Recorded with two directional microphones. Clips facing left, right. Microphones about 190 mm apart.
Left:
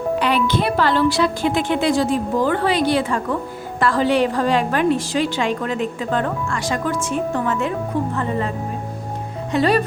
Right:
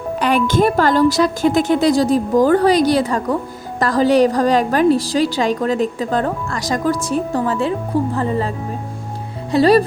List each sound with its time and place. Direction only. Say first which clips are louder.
0.2 s a woman's voice: right 7 dB; 45° right (ahead or behind)